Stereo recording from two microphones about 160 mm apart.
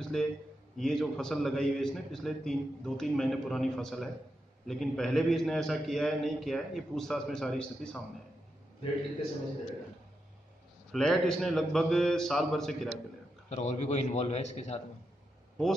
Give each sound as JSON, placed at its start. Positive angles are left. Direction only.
{"t": 0.0, "sound": "a sound", "side_deg": 5}
{"t": 0.7, "sound": "a man's voice", "side_deg": 0}
{"t": 10.9, "sound": "a man's voice", "side_deg": 0}
{"t": 13.5, "sound": "a man's voice", "side_deg": 45}